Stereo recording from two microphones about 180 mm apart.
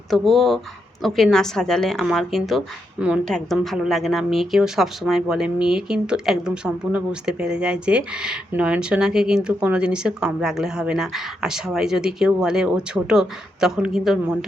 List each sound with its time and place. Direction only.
0.1 s speech: centre (ahead or behind)